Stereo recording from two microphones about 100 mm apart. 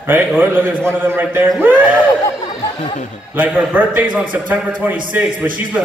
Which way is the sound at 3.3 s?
15° right (ahead or behind).